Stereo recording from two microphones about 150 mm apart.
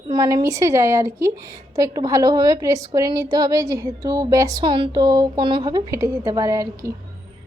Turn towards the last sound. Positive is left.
turn(degrees=-20)  # may be behind; listen again after turning